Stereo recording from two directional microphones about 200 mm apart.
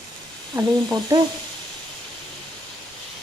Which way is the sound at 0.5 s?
20° right (ahead or behind).